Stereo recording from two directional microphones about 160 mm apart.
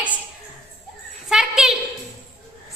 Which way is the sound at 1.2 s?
5° right (ahead or behind).